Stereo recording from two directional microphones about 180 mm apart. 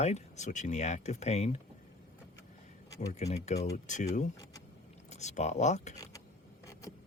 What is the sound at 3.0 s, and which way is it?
Speech, 40° left (ahead or behind).